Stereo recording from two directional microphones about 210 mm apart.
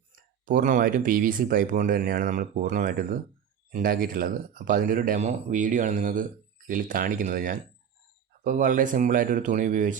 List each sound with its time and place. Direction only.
0.2 s speech: 40° right (ahead or behind)